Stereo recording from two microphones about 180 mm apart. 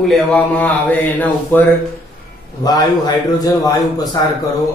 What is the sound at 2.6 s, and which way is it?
A man's voice, 20° left (ahead or behind).